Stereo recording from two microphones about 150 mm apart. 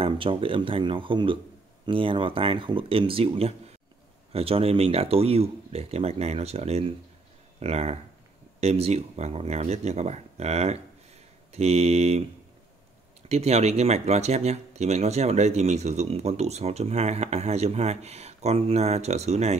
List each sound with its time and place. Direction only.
0.0 s speech: 35° right (ahead or behind)
13.3 s speech: 45° right (ahead or behind)